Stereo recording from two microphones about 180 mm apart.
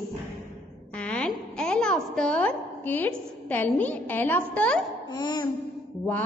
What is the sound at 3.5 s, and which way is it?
A woman's voice, 10° left (ahead or behind).